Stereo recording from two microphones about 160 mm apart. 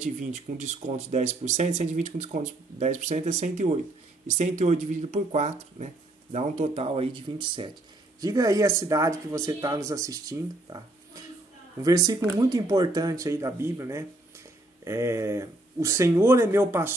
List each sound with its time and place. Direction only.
0.0 s speech: 45° right (ahead or behind); by 16.9 s 15° right (ahead or behind)